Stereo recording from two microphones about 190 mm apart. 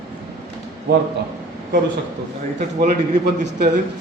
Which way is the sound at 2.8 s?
40° right (ahead or behind).